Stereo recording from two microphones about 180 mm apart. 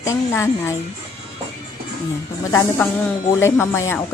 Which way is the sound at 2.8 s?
10° left (ahead or behind).